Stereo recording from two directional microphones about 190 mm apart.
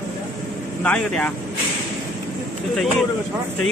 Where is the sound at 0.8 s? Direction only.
5° left (ahead or behind).